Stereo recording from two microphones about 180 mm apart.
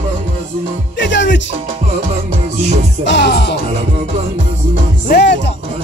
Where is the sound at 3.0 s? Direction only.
75° left (ahead or behind).